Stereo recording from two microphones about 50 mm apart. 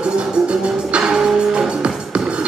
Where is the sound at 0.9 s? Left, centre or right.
Centre.